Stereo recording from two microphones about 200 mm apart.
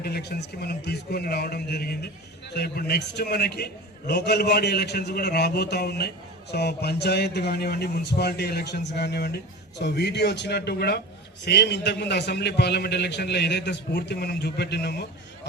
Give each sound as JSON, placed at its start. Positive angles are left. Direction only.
{"t": 0.0, "sound": "a man's voice", "side_deg": 55}